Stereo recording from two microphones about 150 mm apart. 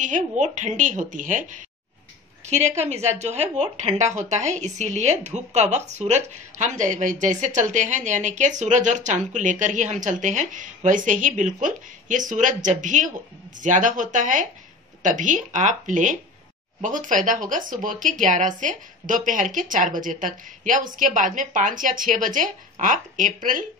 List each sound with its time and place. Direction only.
0.4 s a woman's voice: 55° right (ahead or behind)